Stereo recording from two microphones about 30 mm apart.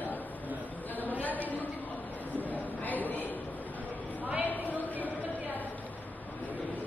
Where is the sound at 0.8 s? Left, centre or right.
Left.